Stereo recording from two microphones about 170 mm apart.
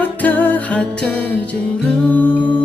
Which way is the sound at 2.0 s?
10° left (ahead or behind).